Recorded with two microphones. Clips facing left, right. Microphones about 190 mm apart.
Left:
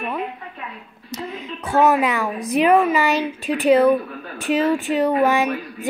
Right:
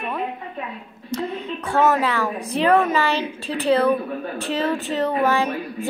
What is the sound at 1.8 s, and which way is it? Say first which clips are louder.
A woman's voice: left 2 dB; 15° left (ahead or behind).